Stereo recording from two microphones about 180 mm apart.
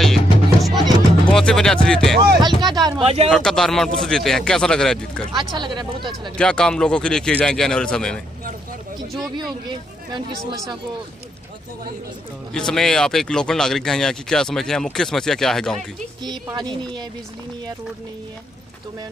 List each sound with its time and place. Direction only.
0.0 s music: centre (ahead or behind)
0.7 s music: 25° right (ahead or behind)
1.3 s speech: 5° left (ahead or behind)
2.7 s speech: 20° right (ahead or behind)
3.3 s speech: centre (ahead or behind)
9.4 s speech: 25° right (ahead or behind)
12.5 s speech: 5° left (ahead or behind)
16.3 s speech: 25° right (ahead or behind)